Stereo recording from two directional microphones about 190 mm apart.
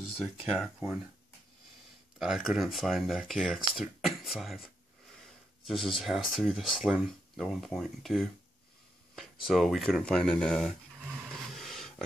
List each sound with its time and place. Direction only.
0.2 s speech: centre (ahead or behind)
2.1 s speech: 5° right (ahead or behind)
5.7 s speech: centre (ahead or behind)